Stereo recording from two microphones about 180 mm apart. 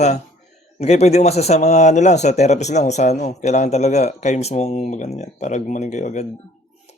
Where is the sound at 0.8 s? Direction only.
35° left (ahead or behind).